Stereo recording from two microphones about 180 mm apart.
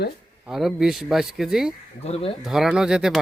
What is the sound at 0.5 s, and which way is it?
Speech, centre (ahead or behind).